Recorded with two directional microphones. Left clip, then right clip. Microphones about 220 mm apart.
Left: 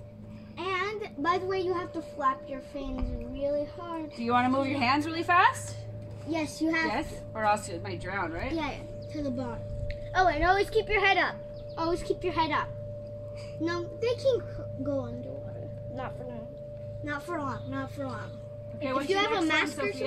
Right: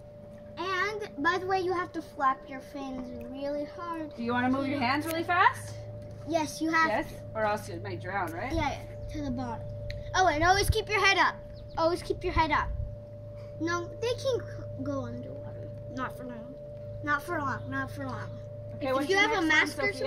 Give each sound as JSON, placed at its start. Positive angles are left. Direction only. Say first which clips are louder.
{"t": 0.6, "sound": "a child's voice", "louder": "right 1 dB", "side_deg": 0}
{"t": 4.2, "sound": "a woman's voice", "louder": "left 4 dB", "side_deg": 35}
{"t": 6.2, "sound": "a woman's voice", "louder": "right 1 dB", "side_deg": -5}
{"t": 6.9, "sound": "a woman's voice", "louder": "right 1 dB", "side_deg": 15}
{"t": 8.5, "sound": "speech", "louder": "right 2 dB", "side_deg": 0}
{"t": 10.1, "sound": "a child's voice", "louder": "even", "side_deg": -50}
{"t": 11.7, "sound": "a woman's voice", "louder": "right 2 dB", "side_deg": -10}
{"t": 17.1, "sound": "a woman's voice", "louder": "right 4 dB", "side_deg": 0}